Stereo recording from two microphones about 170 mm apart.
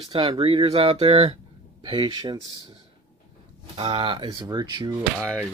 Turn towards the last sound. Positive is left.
turn(degrees=-25)  # may be behind; listen again after turning